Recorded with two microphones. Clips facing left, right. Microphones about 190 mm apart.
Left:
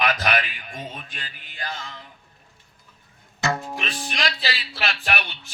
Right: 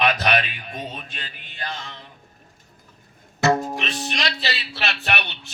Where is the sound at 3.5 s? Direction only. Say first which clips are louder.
Right 9 dB; 45° right (ahead or behind).